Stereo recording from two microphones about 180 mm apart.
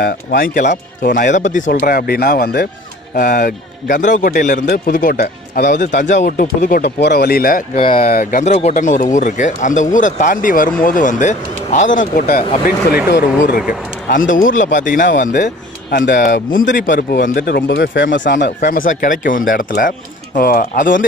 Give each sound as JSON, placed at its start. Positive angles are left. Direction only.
{"t": 0.0, "sound": "speech", "side_deg": 55}
{"t": 3.2, "sound": "speech", "side_deg": 50}
{"t": 5.7, "sound": "speech", "side_deg": 45}
{"t": 6.8, "sound": "speech", "side_deg": 65}
{"t": 7.7, "sound": "speech", "side_deg": 30}
{"t": 8.0, "sound": "speech", "side_deg": 55}
{"t": 15.9, "sound": "speech", "side_deg": 65}
{"t": 18.8, "sound": "speech", "side_deg": 45}